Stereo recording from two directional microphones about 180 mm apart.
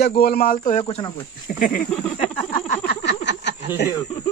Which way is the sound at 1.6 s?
50° left (ahead or behind).